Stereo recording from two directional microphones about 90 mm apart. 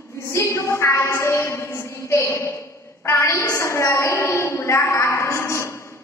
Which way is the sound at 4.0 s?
30° left (ahead or behind).